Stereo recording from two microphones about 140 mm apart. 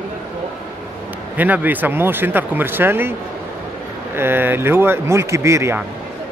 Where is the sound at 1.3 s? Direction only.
10° right (ahead or behind).